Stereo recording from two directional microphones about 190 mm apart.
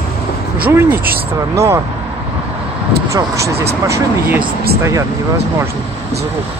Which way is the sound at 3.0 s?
15° right (ahead or behind).